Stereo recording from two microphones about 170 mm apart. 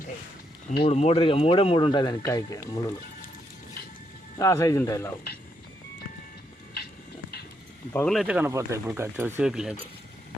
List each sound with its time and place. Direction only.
0.9 s speech: 40° left (ahead or behind); by 2.8 s 20° left (ahead or behind)
4.4 s speech: 20° left (ahead or behind)
7.9 s speech: 5° left (ahead or behind)